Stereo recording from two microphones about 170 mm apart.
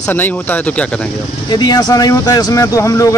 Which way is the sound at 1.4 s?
25° left (ahead or behind).